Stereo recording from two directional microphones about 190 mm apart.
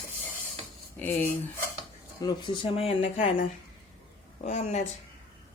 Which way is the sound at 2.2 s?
25° left (ahead or behind).